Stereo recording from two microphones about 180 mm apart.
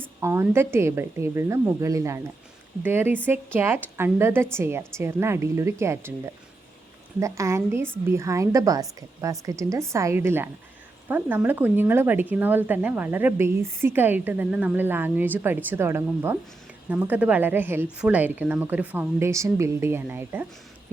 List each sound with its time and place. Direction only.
0.2 s speech: 15° right (ahead or behind)